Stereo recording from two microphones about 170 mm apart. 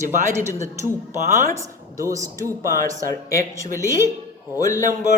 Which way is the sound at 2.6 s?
55° right (ahead or behind).